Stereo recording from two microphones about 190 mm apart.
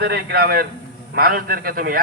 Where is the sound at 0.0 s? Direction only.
55° right (ahead or behind).